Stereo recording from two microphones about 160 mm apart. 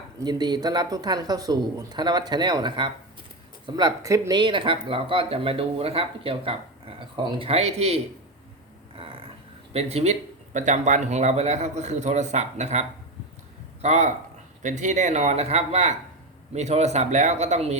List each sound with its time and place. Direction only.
0.2 s speech: 25° right (ahead or behind)
9.0 s a sound: 35° right (ahead or behind)
9.7 s speech: 40° right (ahead or behind)
13.8 s speech: 45° right (ahead or behind)